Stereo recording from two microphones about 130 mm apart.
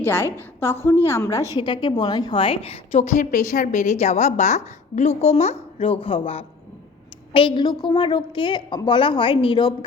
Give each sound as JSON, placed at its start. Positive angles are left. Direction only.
{"t": 0.0, "sound": "a woman's voice", "side_deg": 20}
{"t": 1.5, "sound": "a woman's voice", "side_deg": 35}